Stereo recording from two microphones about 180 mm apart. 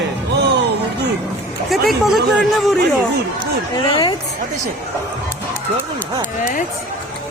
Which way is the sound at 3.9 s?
25° left (ahead or behind).